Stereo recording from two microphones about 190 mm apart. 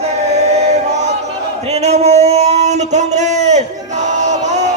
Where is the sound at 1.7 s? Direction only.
35° right (ahead or behind).